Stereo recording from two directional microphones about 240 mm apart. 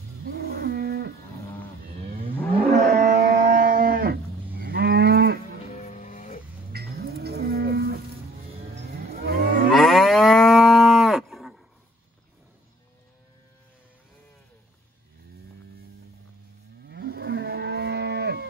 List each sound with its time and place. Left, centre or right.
0.2 s livestock: right
2.0 s moo: right
2.3 s moo: centre
3.0 s moo: right
5.7 s music: left
6.7 s livestock: right
8.8 s moo: right
9.7 s livestock: centre
16.8 s moo: right